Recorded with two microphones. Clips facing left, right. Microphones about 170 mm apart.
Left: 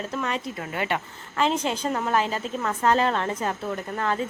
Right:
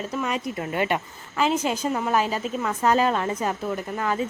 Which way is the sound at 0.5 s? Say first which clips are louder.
Right 3 dB; 20° right (ahead or behind).